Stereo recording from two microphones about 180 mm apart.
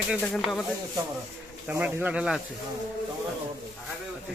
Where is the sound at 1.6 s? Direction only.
10° right (ahead or behind).